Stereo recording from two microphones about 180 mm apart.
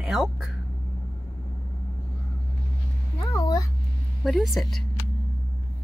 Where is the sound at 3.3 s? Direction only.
20° left (ahead or behind).